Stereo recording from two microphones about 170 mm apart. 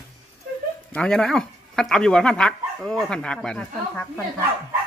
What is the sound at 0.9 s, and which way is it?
Speech, 5° left (ahead or behind).